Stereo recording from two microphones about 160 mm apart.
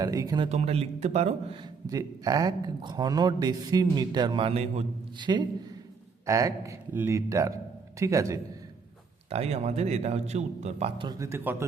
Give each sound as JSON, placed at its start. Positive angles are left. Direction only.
{"t": 0.0, "sound": "a man's voice", "side_deg": -25}
{"t": 0.4, "sound": "a man's voice", "side_deg": -40}
{"t": 1.9, "sound": "a man's voice", "side_deg": -25}
{"t": 5.2, "sound": "a man's voice", "side_deg": -30}
{"t": 9.3, "sound": "a man's voice", "side_deg": -40}
{"t": 11.2, "sound": "speech", "side_deg": -15}